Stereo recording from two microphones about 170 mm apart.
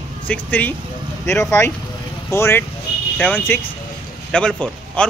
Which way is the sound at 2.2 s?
15° left (ahead or behind).